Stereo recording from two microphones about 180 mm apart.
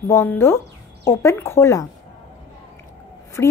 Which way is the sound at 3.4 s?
15° left (ahead or behind).